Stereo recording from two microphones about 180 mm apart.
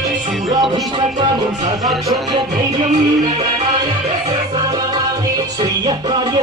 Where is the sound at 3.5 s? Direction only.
30° right (ahead or behind).